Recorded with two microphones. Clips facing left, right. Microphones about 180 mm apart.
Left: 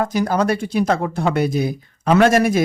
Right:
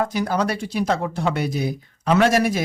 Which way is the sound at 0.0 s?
45° left (ahead or behind).